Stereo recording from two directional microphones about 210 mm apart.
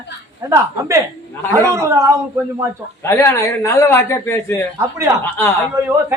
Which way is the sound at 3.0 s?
10° left (ahead or behind).